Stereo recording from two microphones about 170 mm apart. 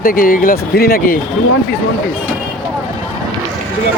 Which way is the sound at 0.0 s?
55° left (ahead or behind).